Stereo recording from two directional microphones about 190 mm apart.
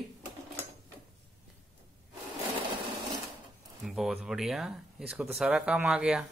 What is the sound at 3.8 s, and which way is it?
Speech, centre (ahead or behind).